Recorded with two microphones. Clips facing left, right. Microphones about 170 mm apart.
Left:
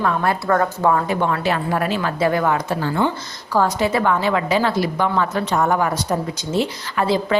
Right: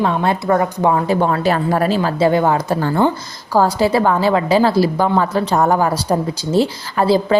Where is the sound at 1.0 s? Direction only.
35° right (ahead or behind).